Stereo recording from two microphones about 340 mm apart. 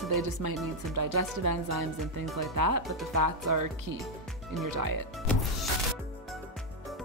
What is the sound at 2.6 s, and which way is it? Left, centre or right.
Speech, right.